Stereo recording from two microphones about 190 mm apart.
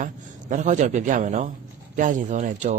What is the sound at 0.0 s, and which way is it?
A man's voice, 40° right (ahead or behind).